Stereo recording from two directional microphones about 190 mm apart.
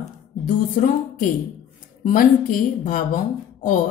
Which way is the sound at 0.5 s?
45° left (ahead or behind).